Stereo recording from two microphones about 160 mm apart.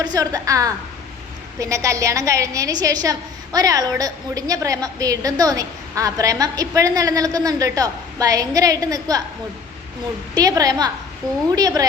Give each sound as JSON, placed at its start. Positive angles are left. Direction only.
{"t": 0.0, "sound": "a woman's voice", "side_deg": -25}
{"t": 10.3, "sound": "a woman's voice", "side_deg": -20}